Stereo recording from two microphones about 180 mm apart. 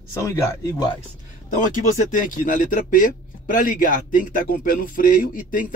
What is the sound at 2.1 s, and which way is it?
Speech, 45° left (ahead or behind).